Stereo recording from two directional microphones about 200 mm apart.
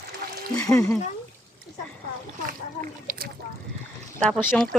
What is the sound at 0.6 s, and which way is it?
Speech, 15° left (ahead or behind).